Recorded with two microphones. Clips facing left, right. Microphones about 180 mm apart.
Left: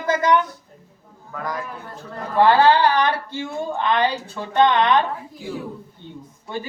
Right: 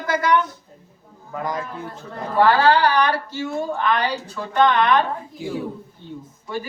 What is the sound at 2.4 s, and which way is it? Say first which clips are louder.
A woman's voice: left 2 dB; 25° left (ahead or behind).